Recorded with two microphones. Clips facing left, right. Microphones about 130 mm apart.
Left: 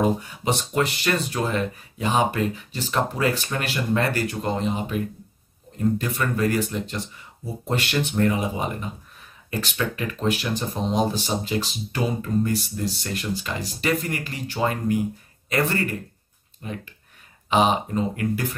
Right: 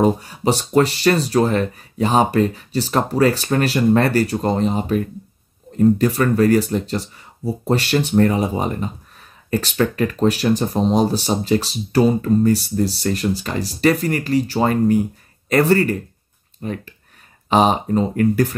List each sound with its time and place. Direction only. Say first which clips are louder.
0.0 s speech: right 6 dB; 35° right (ahead or behind)